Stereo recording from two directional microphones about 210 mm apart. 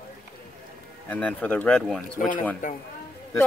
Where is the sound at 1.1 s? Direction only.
5° left (ahead or behind).